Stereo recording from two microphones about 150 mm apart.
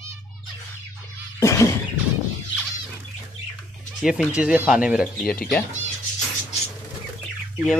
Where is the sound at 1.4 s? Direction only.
20° left (ahead or behind).